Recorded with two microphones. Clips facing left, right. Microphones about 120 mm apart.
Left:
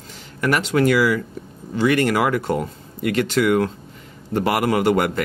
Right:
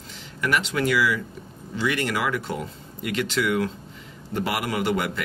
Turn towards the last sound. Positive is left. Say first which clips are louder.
# left 7 dB
turn(degrees=50)  # may be behind; listen again after turning